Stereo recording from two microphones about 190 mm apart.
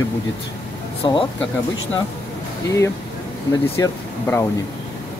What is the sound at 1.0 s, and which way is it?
Speech, 25° left (ahead or behind).